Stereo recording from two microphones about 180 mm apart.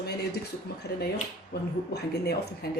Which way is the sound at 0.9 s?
65° left (ahead or behind).